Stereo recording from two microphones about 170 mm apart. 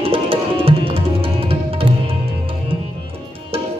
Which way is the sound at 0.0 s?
35° right (ahead or behind).